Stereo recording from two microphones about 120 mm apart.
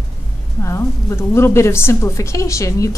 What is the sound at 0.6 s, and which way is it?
A woman's voice, 25° left (ahead or behind).